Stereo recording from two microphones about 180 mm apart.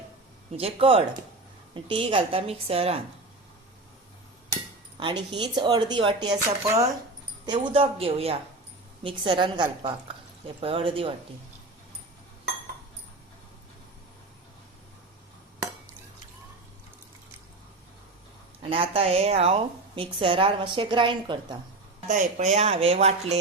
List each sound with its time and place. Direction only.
0.5 s speech: 30° right (ahead or behind)
4.9 s speech: 25° right (ahead or behind)
18.7 s speech: 30° right (ahead or behind)
22.1 s speech: 40° right (ahead or behind)